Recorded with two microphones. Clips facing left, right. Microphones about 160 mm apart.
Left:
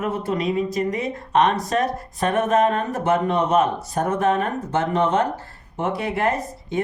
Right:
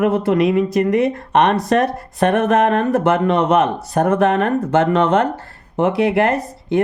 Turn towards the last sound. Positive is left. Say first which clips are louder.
# right 7 dB
turn(degrees=-70)  # may be behind; listen again after turning